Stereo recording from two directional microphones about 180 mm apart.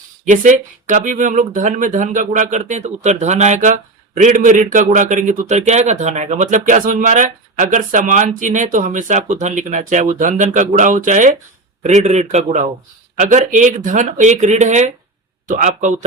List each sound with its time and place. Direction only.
0.3 s a man's voice: 45° right (ahead or behind)